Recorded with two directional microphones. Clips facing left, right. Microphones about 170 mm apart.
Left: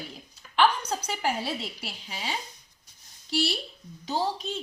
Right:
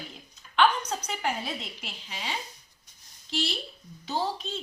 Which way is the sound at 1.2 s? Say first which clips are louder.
Left 4 dB; 35° left (ahead or behind).